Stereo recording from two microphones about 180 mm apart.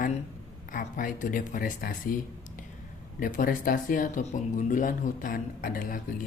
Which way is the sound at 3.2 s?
50° left (ahead or behind).